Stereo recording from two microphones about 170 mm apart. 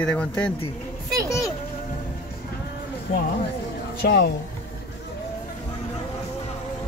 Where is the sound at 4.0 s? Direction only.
75° left (ahead or behind).